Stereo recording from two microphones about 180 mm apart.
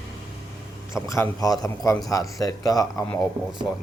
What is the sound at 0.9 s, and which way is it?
Speech, 15° left (ahead or behind).